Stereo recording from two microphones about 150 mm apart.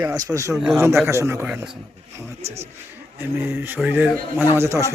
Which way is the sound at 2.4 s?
45° right (ahead or behind).